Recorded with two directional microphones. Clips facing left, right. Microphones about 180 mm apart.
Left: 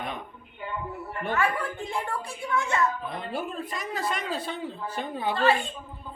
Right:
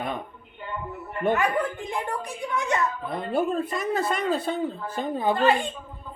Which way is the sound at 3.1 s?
55° right (ahead or behind).